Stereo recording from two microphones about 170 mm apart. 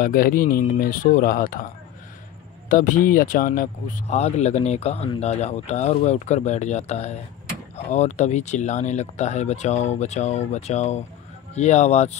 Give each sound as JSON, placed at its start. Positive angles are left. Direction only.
{"t": 0.0, "sound": "speech", "side_deg": 55}
{"t": 2.7, "sound": "speech", "side_deg": 50}
{"t": 4.1, "sound": "speech", "side_deg": 40}